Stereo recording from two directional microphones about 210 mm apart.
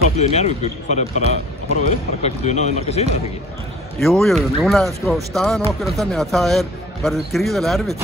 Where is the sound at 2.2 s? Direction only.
30° left (ahead or behind).